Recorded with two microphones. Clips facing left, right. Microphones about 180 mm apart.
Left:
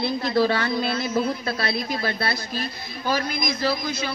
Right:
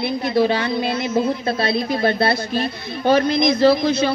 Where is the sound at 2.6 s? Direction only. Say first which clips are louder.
Right 8 dB; 65° right (ahead or behind).